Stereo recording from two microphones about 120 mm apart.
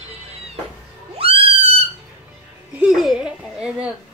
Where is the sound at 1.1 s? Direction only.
55° right (ahead or behind).